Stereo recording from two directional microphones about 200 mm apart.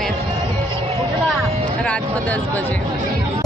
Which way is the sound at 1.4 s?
5° left (ahead or behind).